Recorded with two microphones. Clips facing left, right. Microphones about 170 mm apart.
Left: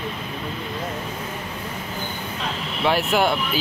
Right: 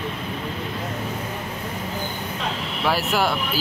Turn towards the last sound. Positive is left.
turn(degrees=-5)  # may be behind; listen again after turning